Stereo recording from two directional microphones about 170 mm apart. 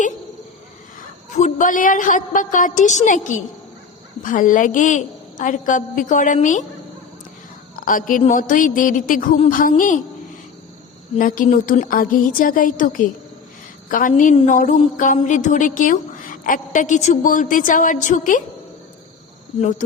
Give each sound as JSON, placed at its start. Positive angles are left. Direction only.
{"t": 1.4, "sound": "a woman's voice", "side_deg": 45}
{"t": 7.8, "sound": "a woman's voice", "side_deg": 55}
{"t": 11.2, "sound": "a woman's voice", "side_deg": 50}